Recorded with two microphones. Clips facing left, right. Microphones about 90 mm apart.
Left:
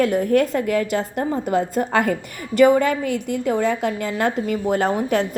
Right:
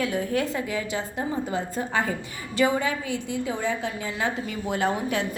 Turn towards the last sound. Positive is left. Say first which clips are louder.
# left 6 dB
turn(degrees=45)  # may be behind; listen again after turning